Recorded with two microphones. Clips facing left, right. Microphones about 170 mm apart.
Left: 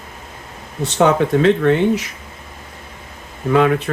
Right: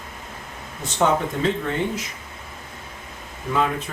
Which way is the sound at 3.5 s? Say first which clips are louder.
Left 8 dB; 70° left (ahead or behind).